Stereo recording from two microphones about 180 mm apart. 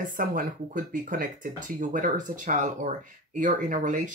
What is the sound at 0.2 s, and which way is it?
Speech, 50° right (ahead or behind).